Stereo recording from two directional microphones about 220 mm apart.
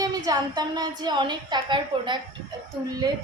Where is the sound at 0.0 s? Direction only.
15° right (ahead or behind).